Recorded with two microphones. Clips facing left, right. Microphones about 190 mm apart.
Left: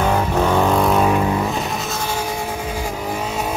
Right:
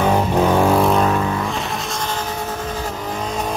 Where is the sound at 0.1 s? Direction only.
10° right (ahead or behind).